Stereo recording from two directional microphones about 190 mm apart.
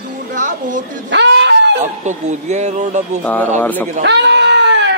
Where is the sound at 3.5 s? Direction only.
10° left (ahead or behind).